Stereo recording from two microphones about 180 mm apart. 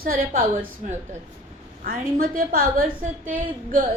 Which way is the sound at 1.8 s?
55° right (ahead or behind).